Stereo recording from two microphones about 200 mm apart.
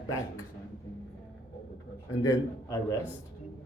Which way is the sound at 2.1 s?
15° left (ahead or behind).